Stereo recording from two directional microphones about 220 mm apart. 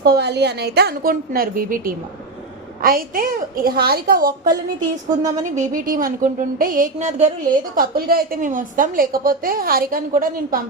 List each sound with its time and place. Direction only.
0.0 s a woman's voice: 50° right (ahead or behind)